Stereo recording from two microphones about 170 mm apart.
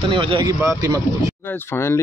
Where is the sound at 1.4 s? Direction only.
15° left (ahead or behind).